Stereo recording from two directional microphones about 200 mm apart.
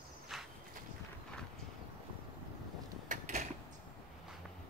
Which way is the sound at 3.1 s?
35° right (ahead or behind).